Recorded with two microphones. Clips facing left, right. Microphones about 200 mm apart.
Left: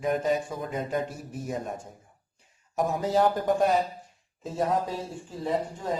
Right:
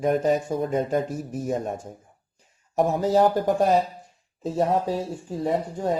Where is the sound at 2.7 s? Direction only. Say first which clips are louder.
Right 5 dB; 40° right (ahead or behind).